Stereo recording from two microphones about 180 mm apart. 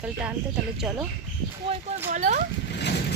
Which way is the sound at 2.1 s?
40° right (ahead or behind).